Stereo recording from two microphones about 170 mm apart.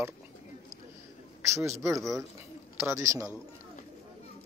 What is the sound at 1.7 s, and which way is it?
Speech, 15° right (ahead or behind).